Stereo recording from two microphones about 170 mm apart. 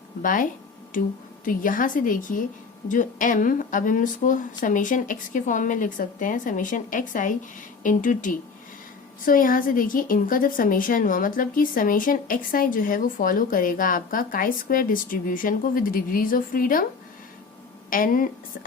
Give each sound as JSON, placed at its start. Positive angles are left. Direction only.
{"t": 0.2, "sound": "a woman's voice", "side_deg": 50}
{"t": 17.9, "sound": "a woman's voice", "side_deg": 55}